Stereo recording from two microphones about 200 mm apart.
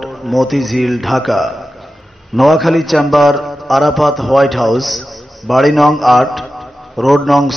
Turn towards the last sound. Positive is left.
turn(degrees=0)  # may be behind; listen again after turning